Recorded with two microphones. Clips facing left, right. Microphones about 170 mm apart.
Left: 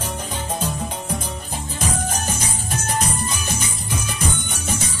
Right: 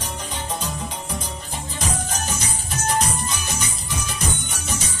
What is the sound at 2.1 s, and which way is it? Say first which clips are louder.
Music: left 2 dB; 50° left (ahead or behind).